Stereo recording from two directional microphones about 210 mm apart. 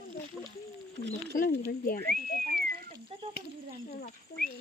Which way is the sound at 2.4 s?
45° right (ahead or behind).